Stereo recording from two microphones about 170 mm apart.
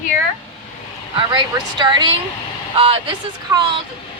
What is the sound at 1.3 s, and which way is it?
Speech, 25° right (ahead or behind).